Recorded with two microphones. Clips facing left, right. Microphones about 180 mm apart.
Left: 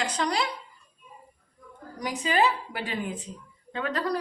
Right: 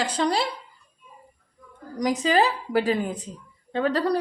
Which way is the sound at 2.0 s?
35° right (ahead or behind).